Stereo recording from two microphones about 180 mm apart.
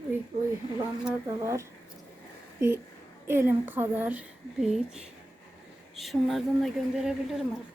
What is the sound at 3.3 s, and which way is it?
A woman's voice, 10° right (ahead or behind).